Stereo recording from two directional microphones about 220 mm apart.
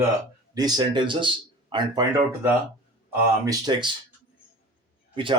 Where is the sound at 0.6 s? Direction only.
20° right (ahead or behind).